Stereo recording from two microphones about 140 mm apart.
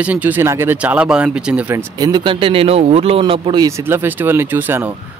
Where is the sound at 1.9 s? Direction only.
30° right (ahead or behind).